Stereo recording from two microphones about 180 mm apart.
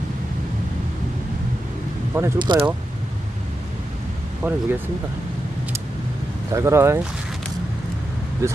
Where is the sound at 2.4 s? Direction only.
25° right (ahead or behind).